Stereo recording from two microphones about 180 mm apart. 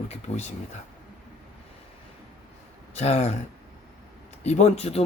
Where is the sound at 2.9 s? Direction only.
35° left (ahead or behind).